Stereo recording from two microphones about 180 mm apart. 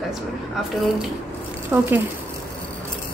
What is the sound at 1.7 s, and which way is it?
Speech, 20° right (ahead or behind).